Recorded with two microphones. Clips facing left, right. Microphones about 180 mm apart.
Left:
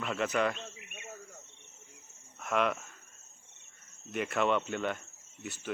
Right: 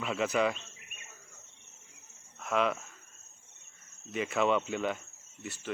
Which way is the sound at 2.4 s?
Centre (ahead or behind).